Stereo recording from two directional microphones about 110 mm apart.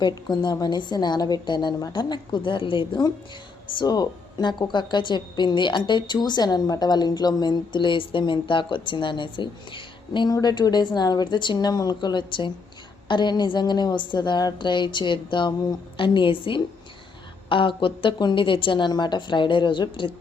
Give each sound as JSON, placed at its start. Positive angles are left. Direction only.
{"t": 0.0, "sound": "a woman's voice", "side_deg": 40}
{"t": 3.8, "sound": "a woman's voice", "side_deg": 40}